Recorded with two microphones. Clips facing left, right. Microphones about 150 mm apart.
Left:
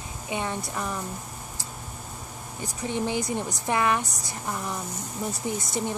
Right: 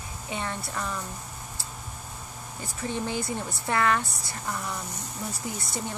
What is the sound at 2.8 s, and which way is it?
Speech, 15° left (ahead or behind).